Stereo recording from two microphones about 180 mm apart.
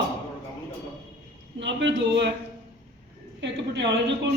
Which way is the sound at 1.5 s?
90° right.